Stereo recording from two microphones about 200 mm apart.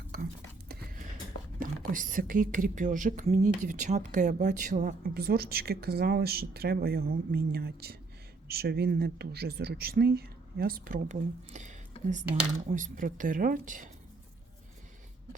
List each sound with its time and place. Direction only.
1.5 s a woman's voice: 40° right (ahead or behind)